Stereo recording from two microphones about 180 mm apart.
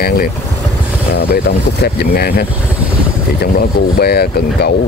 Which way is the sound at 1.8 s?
60° left (ahead or behind).